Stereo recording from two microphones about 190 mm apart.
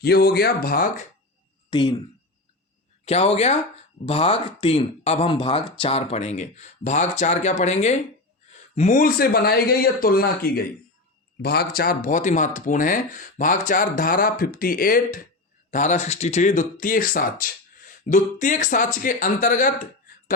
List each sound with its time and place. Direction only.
0.0 s speech: 55° left (ahead or behind)
1.7 s speech: 25° left (ahead or behind)
3.0 s speech: 35° left (ahead or behind)